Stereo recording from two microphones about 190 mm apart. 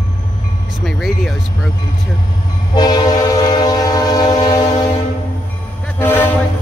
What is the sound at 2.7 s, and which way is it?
Train, 20° left (ahead or behind).